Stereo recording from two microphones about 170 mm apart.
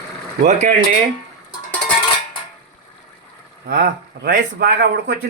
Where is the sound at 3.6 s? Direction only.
65° right (ahead or behind).